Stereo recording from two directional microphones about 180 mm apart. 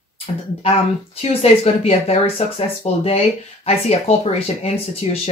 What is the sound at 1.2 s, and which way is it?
Speech, 35° left (ahead or behind).